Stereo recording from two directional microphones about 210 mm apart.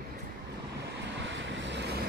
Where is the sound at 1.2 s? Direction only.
60° right (ahead or behind).